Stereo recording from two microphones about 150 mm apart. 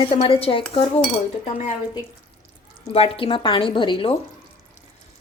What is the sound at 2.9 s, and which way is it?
Speech, 40° left (ahead or behind).